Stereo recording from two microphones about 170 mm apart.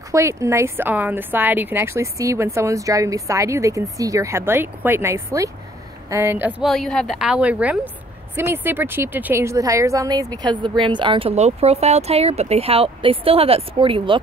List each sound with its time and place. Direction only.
0.1 s a woman's voice: 15° right (ahead or behind)
6.6 s a woman's voice: centre (ahead or behind); by 14.2 s 30° right (ahead or behind)